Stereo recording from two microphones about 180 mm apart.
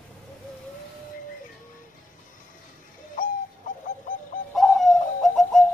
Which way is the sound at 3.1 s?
45° left (ahead or behind).